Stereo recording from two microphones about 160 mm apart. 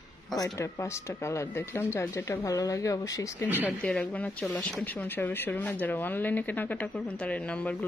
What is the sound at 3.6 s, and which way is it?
Speech, 5° left (ahead or behind).